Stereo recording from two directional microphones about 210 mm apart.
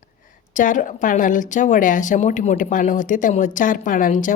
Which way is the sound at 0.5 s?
40° left (ahead or behind).